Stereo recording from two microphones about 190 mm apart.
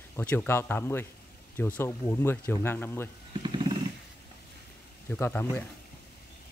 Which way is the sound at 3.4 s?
25° right (ahead or behind).